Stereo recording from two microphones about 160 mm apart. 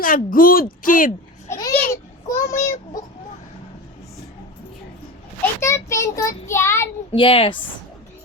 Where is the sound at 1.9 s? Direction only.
20° left (ahead or behind).